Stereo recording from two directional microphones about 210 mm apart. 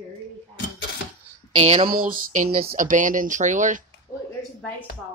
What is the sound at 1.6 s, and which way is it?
Speech, 30° right (ahead or behind).